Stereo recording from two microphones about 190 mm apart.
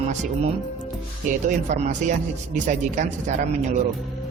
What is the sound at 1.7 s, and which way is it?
Speech, 40° right (ahead or behind).